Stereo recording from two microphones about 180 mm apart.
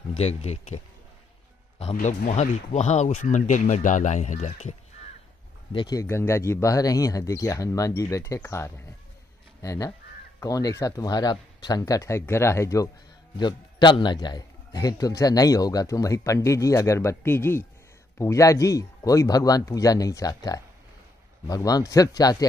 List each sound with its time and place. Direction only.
0.2 s speech: 35° left (ahead or behind)
1.8 s speech: 40° left (ahead or behind)
5.7 s a man's voice: 25° left (ahead or behind)